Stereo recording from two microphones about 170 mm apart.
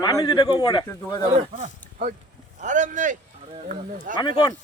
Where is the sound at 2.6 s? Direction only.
45° right (ahead or behind).